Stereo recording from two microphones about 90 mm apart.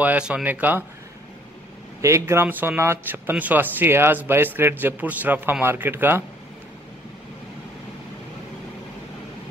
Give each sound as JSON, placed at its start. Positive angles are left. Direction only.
{"t": 0.0, "sound": "speech", "side_deg": -15}
{"t": 2.0, "sound": "speech", "side_deg": -35}